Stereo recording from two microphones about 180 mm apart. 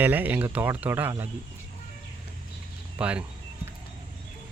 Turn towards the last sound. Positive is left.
turn(degrees=-5)  # may be behind; listen again after turning